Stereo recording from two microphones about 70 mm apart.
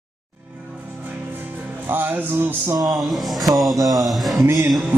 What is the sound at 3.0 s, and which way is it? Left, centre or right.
Music, centre.